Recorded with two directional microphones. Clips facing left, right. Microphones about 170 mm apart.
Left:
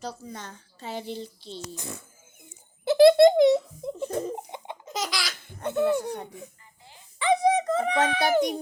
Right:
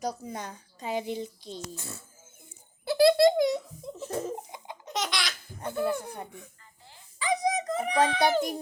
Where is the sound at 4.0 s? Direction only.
Centre (ahead or behind).